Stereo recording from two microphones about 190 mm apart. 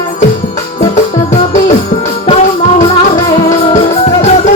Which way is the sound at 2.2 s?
35° left (ahead or behind).